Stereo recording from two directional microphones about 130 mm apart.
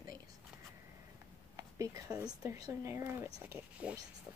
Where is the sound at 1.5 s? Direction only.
25° right (ahead or behind).